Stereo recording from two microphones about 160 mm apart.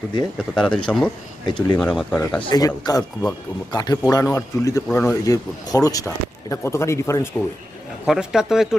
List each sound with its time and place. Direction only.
0.3 s speech: 5° left (ahead or behind)
1.5 s a man's voice: 25° left (ahead or behind)
1.8 s speech: 5° left (ahead or behind)
2.5 s a man's voice: 25° left (ahead or behind)
8.0 s speech: 5° right (ahead or behind)